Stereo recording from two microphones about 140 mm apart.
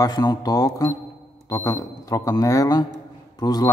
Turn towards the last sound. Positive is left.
turn(degrees=30)  # may be behind; listen again after turning